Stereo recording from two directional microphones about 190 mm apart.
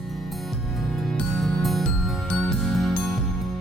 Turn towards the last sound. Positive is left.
turn(degrees=0)  # may be behind; listen again after turning